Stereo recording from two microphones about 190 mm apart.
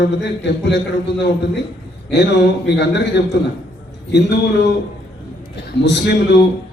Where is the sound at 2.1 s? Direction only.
65° left (ahead or behind).